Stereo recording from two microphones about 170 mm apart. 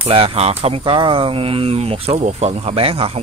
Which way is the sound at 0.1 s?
35° right (ahead or behind).